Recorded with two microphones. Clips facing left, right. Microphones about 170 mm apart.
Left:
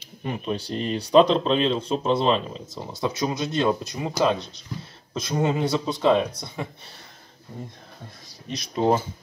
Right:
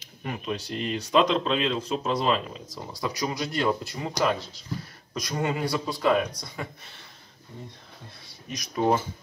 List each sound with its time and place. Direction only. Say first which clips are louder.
0.0 s speech: left 4 dB; 30° left (ahead or behind)
8.3 s speech: left 4 dB; 30° left (ahead or behind)